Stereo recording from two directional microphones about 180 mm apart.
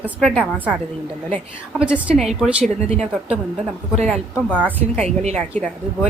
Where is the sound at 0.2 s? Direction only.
Centre (ahead or behind).